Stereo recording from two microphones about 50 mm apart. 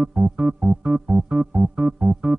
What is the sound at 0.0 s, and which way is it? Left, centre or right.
Music, centre.